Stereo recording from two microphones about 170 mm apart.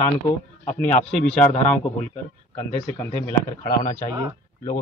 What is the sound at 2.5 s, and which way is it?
Speech, 15° left (ahead or behind).